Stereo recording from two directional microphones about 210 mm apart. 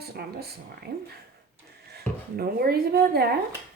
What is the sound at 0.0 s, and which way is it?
Speech, 50° right (ahead or behind).